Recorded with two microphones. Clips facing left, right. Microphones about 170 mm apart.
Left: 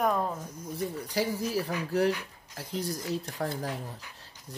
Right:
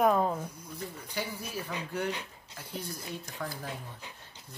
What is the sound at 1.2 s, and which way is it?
Speech, 35° left (ahead or behind).